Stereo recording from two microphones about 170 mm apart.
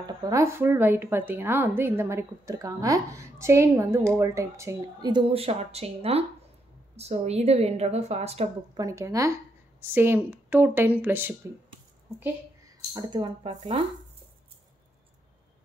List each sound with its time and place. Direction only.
0.0 s a woman's voice: 20° right (ahead or behind); by 8.5 s 40° right (ahead or behind)
8.7 s a woman's voice: 20° right (ahead or behind)
12.9 s speech: 30° right (ahead or behind)
13.5 s a woman's voice: 40° right (ahead or behind)